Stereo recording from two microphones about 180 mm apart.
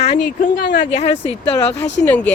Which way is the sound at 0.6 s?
50° left (ahead or behind).